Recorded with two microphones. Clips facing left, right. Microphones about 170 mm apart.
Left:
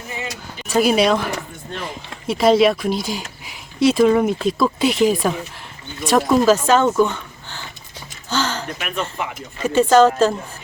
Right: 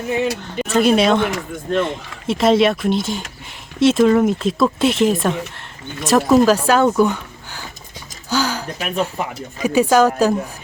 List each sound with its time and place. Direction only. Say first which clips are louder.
0.2 s speech: right 10 dB; 70° right (ahead or behind)
0.7 s speech: right 1 dB; 5° left (ahead or behind); by 7.6 s 15° right (ahead or behind)
8.3 s a sound: right 2 dB; 10° right (ahead or behind)
9.2 s speech: right 2 dB; 40° right (ahead or behind)
9.6 s a woman's voice: left 1 dB; 10° right (ahead or behind)